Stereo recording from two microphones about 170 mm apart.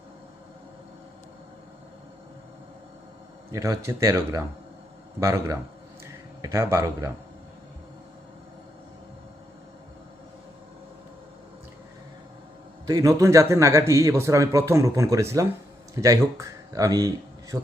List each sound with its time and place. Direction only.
3.5 s a man's voice: 20° right (ahead or behind)
12.8 s a man's voice: 20° right (ahead or behind)
17.5 s a man's voice: 5° right (ahead or behind)